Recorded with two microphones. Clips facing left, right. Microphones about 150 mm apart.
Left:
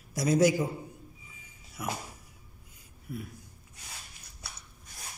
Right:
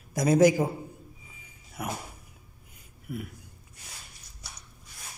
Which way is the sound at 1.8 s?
60° right (ahead or behind).